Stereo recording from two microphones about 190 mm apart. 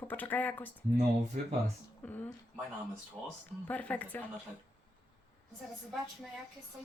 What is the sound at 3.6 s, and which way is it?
Speech, 10° left (ahead or behind).